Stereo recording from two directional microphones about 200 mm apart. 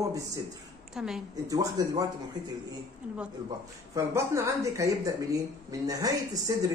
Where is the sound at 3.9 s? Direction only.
15° right (ahead or behind).